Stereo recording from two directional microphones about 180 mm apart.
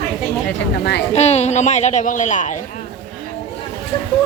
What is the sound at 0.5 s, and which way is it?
Speech, 65° left (ahead or behind).